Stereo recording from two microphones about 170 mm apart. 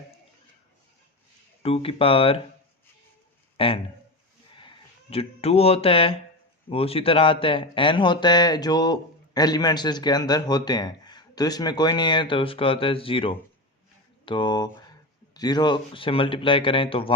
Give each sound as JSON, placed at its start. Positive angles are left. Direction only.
{"t": 1.6, "sound": "speech", "side_deg": 35}
{"t": 3.6, "sound": "speech", "side_deg": 35}